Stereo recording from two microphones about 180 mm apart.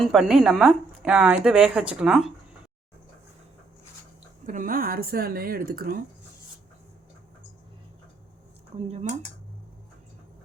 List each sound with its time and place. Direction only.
0.0 s a woman's voice: centre (ahead or behind)
4.4 s speech: 50° right (ahead or behind)
8.7 s speech: 35° right (ahead or behind)